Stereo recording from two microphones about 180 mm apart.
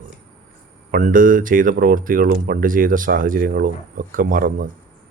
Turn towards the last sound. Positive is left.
turn(degrees=-50)  # may be behind; listen again after turning